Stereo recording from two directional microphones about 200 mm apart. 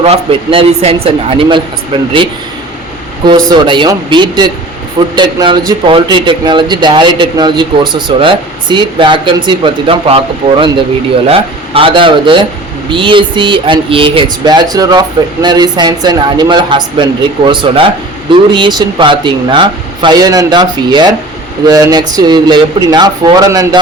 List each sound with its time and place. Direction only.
0.0 s speech: 30° right (ahead or behind)